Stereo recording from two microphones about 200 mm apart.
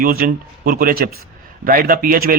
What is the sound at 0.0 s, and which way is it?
Speech, 45° right (ahead or behind).